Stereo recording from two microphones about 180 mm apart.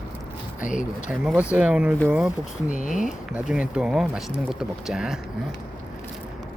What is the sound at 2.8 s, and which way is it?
Speech, 45° left (ahead or behind).